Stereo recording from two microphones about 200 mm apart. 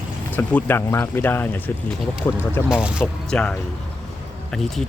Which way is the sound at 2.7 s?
5° right (ahead or behind).